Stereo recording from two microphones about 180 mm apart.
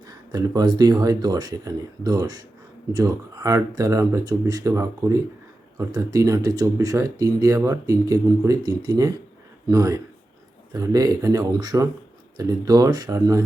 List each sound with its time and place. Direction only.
0.1 s speech: 20° right (ahead or behind)